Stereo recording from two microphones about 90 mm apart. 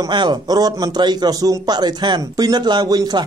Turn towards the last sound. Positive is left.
turn(degrees=-50)  # may be behind; listen again after turning